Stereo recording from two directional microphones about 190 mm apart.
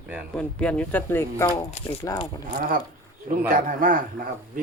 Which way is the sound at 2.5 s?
50° right (ahead or behind).